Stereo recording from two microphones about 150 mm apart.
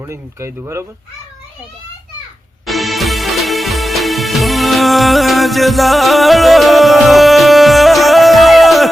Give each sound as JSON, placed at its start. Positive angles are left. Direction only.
{"t": 0.0, "sound": "speech", "side_deg": -20}
{"t": 2.6, "sound": "music", "side_deg": 0}